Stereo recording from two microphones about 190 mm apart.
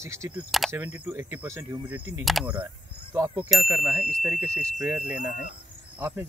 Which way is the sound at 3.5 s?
Centre (ahead or behind).